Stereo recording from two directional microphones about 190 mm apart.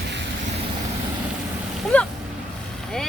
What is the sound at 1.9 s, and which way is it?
Boat, 5° left (ahead or behind).